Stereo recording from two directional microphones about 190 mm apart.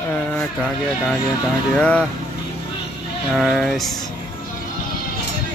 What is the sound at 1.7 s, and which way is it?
Speech, 5° left (ahead or behind).